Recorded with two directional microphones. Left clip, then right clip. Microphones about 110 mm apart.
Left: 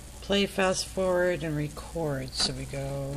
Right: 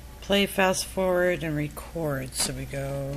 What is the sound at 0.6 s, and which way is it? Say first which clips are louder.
Speech: right 3 dB; 10° right (ahead or behind).